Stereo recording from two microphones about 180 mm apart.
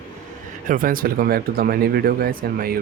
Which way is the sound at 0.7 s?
50° right (ahead or behind).